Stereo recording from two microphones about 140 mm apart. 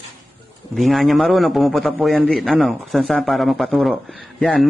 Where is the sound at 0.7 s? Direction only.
Centre (ahead or behind).